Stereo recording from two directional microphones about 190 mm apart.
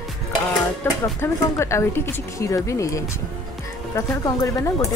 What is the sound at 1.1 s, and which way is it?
Speech, 15° left (ahead or behind).